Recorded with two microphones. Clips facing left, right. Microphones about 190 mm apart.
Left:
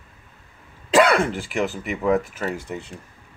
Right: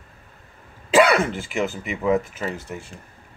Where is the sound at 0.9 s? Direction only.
5° right (ahead or behind).